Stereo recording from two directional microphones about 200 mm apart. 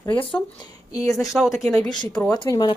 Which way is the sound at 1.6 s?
Centre (ahead or behind).